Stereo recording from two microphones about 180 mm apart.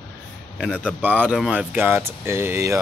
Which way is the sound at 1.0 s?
10° right (ahead or behind).